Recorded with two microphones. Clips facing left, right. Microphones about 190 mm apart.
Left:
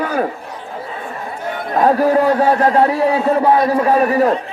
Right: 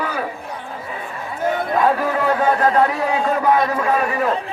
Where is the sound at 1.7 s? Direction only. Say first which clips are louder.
Left 8 dB; 40° left (ahead or behind).